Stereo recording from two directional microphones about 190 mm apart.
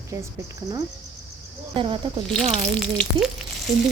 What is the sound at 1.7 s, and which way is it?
Speech, 25° right (ahead or behind).